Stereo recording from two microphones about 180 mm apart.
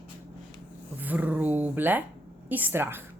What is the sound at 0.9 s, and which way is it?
A woman's voice, 10° right (ahead or behind).